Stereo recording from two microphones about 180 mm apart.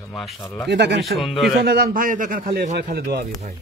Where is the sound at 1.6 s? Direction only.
60° right (ahead or behind).